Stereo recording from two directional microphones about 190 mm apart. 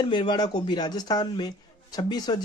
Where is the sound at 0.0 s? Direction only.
25° left (ahead or behind).